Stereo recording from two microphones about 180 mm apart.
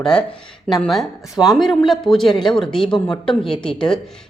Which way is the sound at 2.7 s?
30° left (ahead or behind).